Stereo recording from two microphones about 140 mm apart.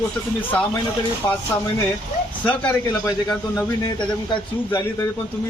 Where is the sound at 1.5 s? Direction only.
10° left (ahead or behind).